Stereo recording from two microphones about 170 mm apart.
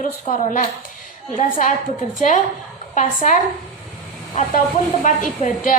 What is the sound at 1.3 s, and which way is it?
Speech, 50° left (ahead or behind).